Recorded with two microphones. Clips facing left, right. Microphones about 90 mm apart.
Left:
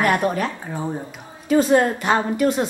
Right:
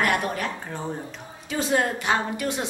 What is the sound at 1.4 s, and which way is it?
A woman's voice, 40° left (ahead or behind).